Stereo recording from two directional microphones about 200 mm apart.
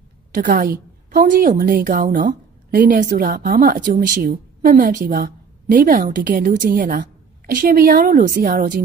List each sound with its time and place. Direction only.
0.3 s a woman's voice: 45° right (ahead or behind)